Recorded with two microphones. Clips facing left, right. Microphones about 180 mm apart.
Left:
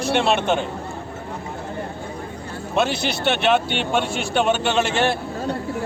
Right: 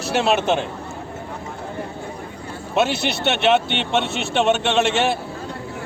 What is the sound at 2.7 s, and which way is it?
A man's voice, 5° right (ahead or behind).